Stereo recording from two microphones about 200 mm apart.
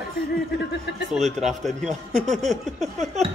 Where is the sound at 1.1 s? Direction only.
35° right (ahead or behind).